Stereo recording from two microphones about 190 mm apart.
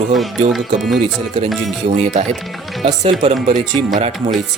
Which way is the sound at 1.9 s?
35° right (ahead or behind).